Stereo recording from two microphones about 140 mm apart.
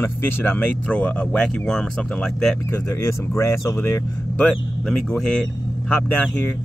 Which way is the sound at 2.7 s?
20° left (ahead or behind).